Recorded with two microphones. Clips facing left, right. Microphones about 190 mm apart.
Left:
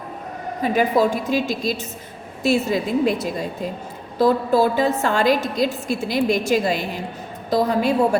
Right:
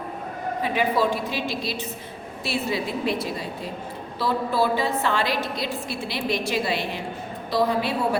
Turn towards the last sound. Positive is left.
turn(degrees=45)  # may be behind; listen again after turning